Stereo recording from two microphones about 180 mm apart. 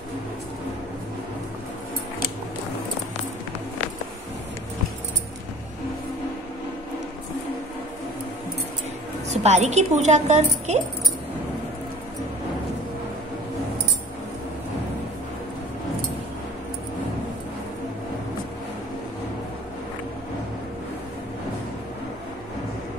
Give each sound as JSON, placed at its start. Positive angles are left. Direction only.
{"t": 9.3, "sound": "a woman's voice", "side_deg": -40}